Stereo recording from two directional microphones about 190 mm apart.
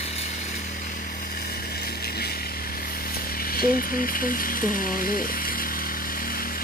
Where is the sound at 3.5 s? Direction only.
50° left (ahead or behind).